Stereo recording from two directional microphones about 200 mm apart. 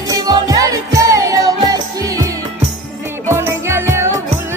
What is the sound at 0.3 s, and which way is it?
Music, 15° right (ahead or behind).